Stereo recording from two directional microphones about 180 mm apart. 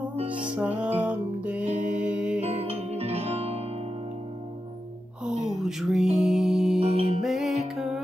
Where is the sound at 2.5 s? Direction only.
35° right (ahead or behind).